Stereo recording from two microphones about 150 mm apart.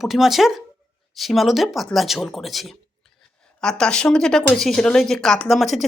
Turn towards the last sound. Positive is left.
turn(degrees=0)  # may be behind; listen again after turning